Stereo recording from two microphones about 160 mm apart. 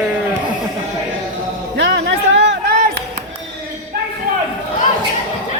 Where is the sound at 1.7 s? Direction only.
90° right.